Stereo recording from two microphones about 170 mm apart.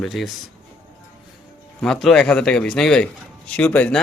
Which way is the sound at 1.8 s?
5° left (ahead or behind).